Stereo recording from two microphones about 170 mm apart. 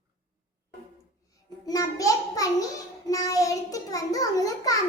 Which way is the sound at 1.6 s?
20° left (ahead or behind).